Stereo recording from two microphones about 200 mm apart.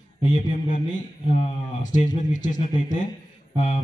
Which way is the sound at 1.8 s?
40° left (ahead or behind).